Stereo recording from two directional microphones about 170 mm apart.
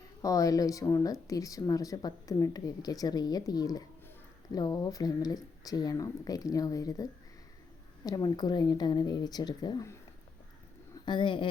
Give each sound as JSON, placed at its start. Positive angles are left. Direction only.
{"t": 0.2, "sound": "speech", "side_deg": 20}